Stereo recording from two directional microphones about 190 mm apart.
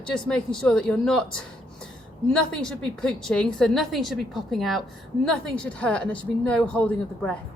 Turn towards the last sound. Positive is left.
turn(degrees=5)  # may be behind; listen again after turning